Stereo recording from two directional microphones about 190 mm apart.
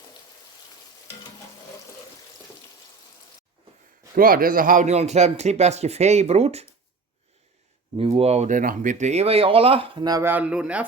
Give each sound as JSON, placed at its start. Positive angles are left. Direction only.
{"t": 4.1, "sound": "speech", "side_deg": -50}
{"t": 7.9, "sound": "speech", "side_deg": -30}